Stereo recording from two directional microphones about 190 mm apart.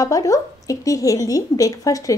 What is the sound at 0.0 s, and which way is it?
A woman's voice, 20° left (ahead or behind).